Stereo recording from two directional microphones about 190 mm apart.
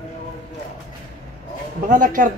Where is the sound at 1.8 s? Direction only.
45° right (ahead or behind).